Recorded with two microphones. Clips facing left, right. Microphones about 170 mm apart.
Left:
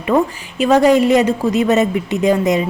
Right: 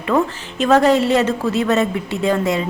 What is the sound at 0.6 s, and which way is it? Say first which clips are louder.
A woman's voice: left 2 dB; 10° left (ahead or behind).